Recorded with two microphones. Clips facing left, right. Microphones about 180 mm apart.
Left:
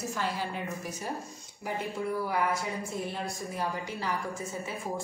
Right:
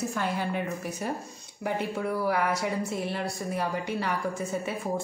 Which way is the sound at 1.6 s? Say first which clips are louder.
Right 4 dB; 70° right (ahead or behind).